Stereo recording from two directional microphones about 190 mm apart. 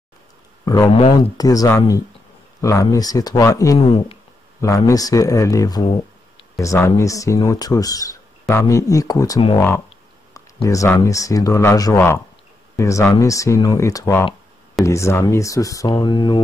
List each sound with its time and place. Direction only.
0.7 s speech: 25° left (ahead or behind)